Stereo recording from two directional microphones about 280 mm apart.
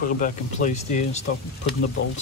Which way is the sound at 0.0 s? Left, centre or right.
Left.